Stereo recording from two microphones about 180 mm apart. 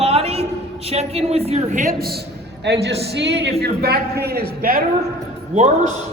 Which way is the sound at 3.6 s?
65° right (ahead or behind).